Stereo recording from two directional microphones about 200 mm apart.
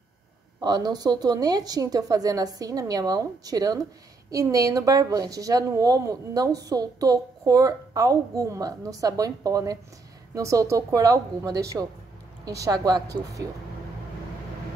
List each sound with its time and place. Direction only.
0.6 s speech: 20° right (ahead or behind)